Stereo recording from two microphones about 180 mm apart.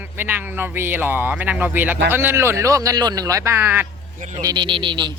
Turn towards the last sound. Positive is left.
turn(degrees=-25)  # may be behind; listen again after turning